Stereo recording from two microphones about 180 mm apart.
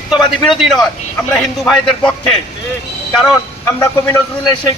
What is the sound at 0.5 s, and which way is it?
A man's voice, centre (ahead or behind).